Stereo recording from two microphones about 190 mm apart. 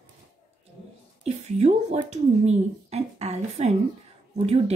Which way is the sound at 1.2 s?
35° right (ahead or behind).